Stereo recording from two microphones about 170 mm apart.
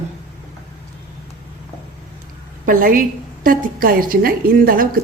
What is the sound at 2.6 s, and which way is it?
A woman's voice, 55° right (ahead or behind).